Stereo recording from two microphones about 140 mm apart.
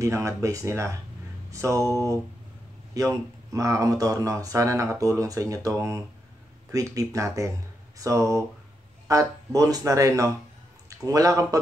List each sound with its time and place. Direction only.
0.0 s speech: 20° right (ahead or behind)